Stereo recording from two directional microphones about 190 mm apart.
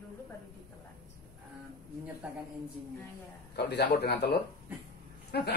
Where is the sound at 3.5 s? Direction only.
60° left (ahead or behind).